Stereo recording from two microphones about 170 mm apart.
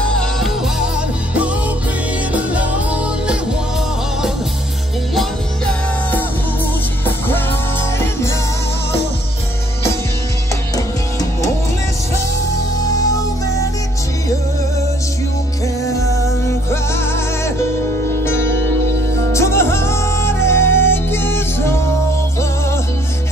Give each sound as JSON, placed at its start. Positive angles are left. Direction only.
{"t": 0.0, "sound": "music", "side_deg": 5}
{"t": 2.3, "sound": "music", "side_deg": -10}
{"t": 15.9, "sound": "music", "side_deg": 20}
{"t": 18.1, "sound": "music", "side_deg": 15}